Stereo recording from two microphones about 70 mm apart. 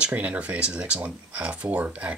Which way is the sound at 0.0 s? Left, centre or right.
Right.